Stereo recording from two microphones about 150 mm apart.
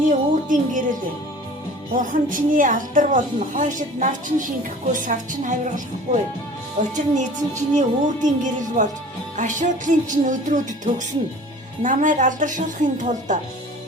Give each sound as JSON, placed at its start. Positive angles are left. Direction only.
{"t": 0.1, "sound": "speech", "side_deg": -60}
{"t": 2.0, "sound": "a woman's voice", "side_deg": -65}